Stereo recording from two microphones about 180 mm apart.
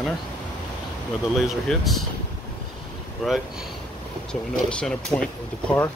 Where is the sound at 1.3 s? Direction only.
Centre (ahead or behind).